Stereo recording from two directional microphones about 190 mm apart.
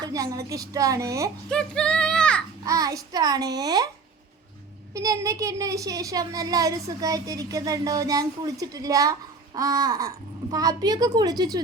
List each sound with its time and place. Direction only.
0.0 s speech: 20° right (ahead or behind)
1.5 s speech: 5° left (ahead or behind)
2.6 s a child's voice: 20° right (ahead or behind)
4.9 s a child's voice: 15° right (ahead or behind)